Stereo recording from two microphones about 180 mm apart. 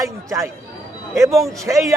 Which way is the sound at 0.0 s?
15° right (ahead or behind).